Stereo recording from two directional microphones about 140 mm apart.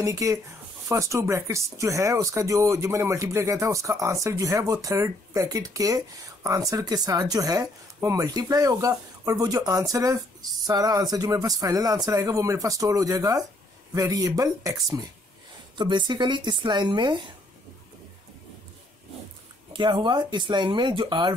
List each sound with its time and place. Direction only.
0.0 s speech: 25° right (ahead or behind)
19.7 s speech: 35° right (ahead or behind)